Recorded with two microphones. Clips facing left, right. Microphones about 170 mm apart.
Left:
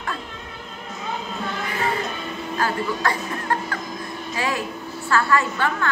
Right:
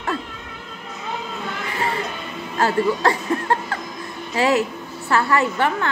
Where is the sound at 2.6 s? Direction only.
25° right (ahead or behind).